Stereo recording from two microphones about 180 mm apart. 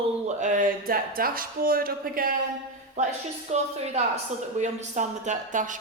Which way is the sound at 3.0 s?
40° right (ahead or behind).